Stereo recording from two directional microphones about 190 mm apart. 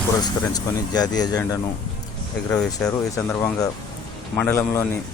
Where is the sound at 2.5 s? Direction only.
5° left (ahead or behind).